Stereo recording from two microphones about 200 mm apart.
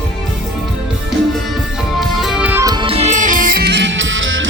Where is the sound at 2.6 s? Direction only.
20° right (ahead or behind); by 4.5 s 70° right (ahead or behind).